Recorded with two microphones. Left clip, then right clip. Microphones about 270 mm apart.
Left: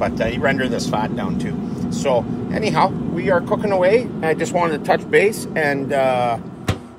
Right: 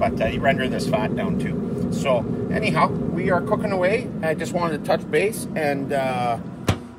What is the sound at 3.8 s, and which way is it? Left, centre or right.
Speech, left.